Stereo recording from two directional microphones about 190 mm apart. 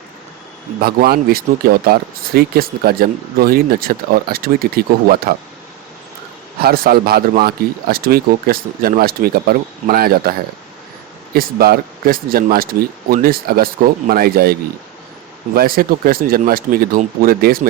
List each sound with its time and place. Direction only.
0.8 s speech: 55° right (ahead or behind)
6.6 s speech: 50° right (ahead or behind)
11.3 s speech: 50° right (ahead or behind)